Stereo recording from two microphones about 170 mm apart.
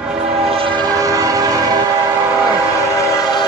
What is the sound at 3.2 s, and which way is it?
Train, 25° left (ahead or behind).